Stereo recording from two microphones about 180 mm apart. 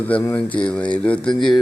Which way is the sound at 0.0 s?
10° left (ahead or behind).